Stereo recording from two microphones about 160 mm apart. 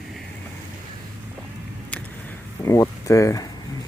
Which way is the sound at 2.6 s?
20° left (ahead or behind).